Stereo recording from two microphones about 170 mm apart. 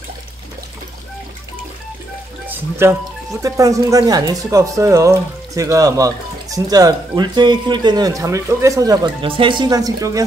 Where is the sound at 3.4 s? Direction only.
20° right (ahead or behind).